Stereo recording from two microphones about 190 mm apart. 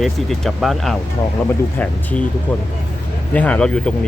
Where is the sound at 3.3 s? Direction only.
5° left (ahead or behind).